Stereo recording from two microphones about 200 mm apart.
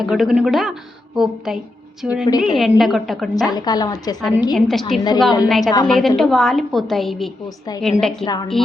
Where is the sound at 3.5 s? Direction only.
20° left (ahead or behind).